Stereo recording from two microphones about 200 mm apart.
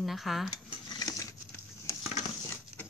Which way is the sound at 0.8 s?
20° left (ahead or behind).